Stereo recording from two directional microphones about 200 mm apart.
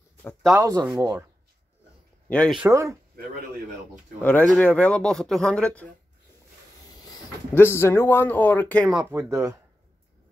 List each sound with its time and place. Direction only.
0.2 s a sound: 10° left (ahead or behind)
0.6 s speech: 15° right (ahead or behind)
2.2 s speech: 5° left (ahead or behind)
2.6 s speech: 15° right (ahead or behind)
4.2 s speech: 10° left (ahead or behind)
7.1 s speech: 10° left (ahead or behind)
8.9 s speech: 5° right (ahead or behind)
9.3 s speech: 15° right (ahead or behind)